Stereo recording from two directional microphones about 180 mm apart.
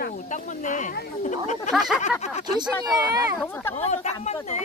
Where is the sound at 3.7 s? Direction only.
40° left (ahead or behind).